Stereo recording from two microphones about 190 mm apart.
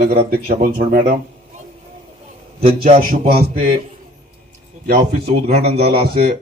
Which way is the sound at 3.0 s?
50° right (ahead or behind).